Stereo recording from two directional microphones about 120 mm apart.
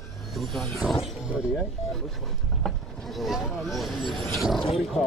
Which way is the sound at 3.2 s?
Centre (ahead or behind).